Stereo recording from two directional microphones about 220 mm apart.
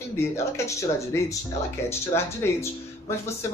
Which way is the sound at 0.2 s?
15° left (ahead or behind).